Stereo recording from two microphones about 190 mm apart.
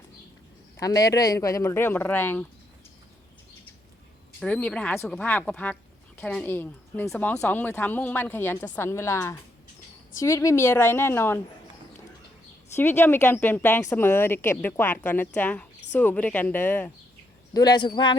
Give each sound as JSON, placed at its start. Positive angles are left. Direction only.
{"t": 0.8, "sound": "a woman's voice", "side_deg": 20}
{"t": 4.4, "sound": "a woman's voice", "side_deg": 5}
{"t": 12.7, "sound": "a woman's voice", "side_deg": 10}
{"t": 17.5, "sound": "a man's voice", "side_deg": 20}